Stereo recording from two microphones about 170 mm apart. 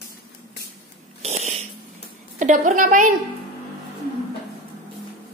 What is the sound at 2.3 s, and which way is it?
Speech, 50° right (ahead or behind).